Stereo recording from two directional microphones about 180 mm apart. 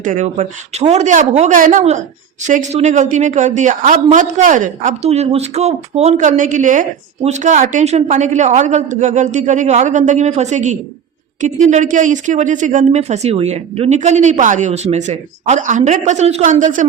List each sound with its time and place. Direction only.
0.0 s a woman's voice: 45° right (ahead or behind)